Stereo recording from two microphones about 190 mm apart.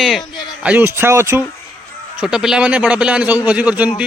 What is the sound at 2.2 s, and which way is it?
A man's voice, 5° right (ahead or behind).